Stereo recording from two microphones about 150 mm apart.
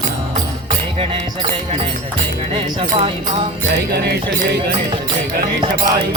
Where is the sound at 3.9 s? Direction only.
90° right.